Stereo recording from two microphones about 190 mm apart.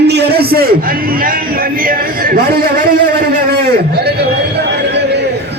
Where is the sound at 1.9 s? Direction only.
50° right (ahead or behind).